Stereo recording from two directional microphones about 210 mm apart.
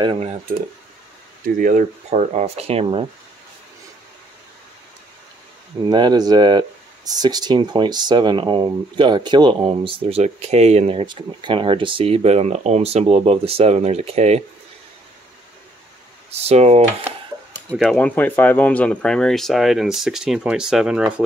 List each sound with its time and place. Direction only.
0.0 s speech: 25° right (ahead or behind)
1.6 s speech: 40° right (ahead or behind)
5.9 s speech: 20° right (ahead or behind)
16.3 s speech: 30° right (ahead or behind)
17.6 s speech: 5° left (ahead or behind)